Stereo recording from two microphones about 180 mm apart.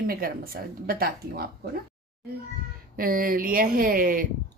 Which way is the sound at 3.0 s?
50° right (ahead or behind).